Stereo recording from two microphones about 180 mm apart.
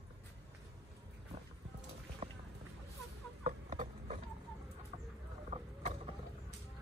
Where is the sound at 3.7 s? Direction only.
45° right (ahead or behind).